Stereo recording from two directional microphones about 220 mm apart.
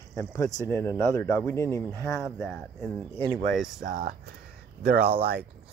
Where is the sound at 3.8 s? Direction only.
40° right (ahead or behind).